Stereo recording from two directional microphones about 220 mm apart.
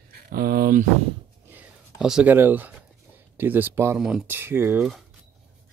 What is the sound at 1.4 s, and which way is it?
Speech, 5° right (ahead or behind).